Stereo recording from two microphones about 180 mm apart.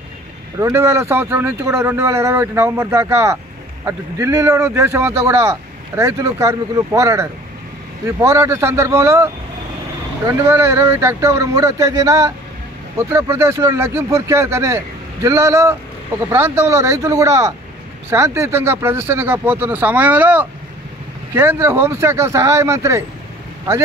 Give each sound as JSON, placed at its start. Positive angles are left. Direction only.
{"t": 0.6, "sound": "speech", "side_deg": -15}